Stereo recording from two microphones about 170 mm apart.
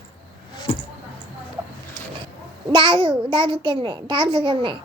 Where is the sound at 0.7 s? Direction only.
35° left (ahead or behind).